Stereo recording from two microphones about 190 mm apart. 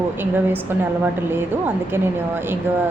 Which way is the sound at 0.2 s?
10° right (ahead or behind).